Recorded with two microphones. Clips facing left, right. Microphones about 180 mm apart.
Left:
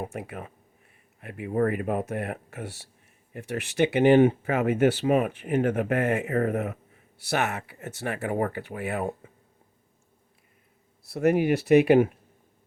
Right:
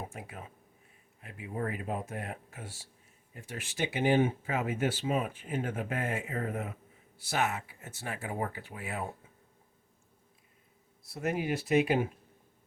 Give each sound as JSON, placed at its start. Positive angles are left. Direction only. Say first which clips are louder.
{"t": 0.0, "sound": "speech", "louder": "left 8 dB", "side_deg": 65}
{"t": 11.0, "sound": "speech", "louder": "left 10 dB", "side_deg": 70}